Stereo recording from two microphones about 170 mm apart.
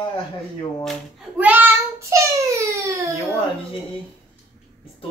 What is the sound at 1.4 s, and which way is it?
Child singing, 10° right (ahead or behind).